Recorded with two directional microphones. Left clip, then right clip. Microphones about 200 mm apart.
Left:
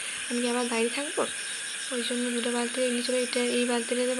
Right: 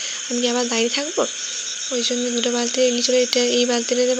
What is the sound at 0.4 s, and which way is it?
Speech, 30° right (ahead or behind).